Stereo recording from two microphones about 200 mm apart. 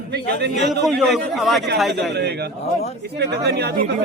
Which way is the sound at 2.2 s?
55° right (ahead or behind).